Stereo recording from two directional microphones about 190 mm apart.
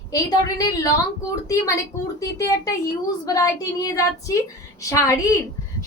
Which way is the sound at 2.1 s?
20° left (ahead or behind).